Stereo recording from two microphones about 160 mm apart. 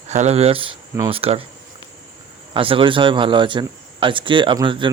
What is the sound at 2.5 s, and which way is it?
Speech, 35° right (ahead or behind).